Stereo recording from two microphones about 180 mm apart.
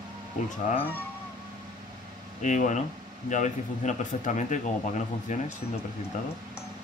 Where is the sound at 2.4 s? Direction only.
45° left (ahead or behind).